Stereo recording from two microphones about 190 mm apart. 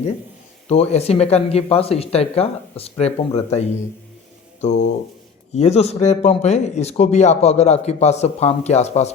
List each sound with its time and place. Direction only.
0.7 s speech: 35° left (ahead or behind)